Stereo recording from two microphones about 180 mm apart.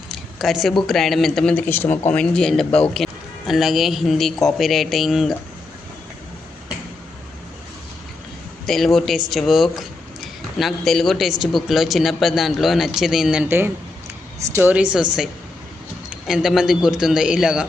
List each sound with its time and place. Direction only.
0.1 s speech: centre (ahead or behind)
8.6 s a woman's voice: centre (ahead or behind)
16.0 s speech: centre (ahead or behind)